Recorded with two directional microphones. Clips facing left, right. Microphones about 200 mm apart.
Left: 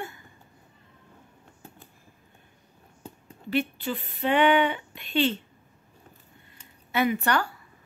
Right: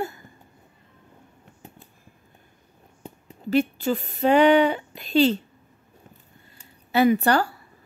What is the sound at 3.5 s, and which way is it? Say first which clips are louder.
A woman's voice: right 6 dB; 40° right (ahead or behind).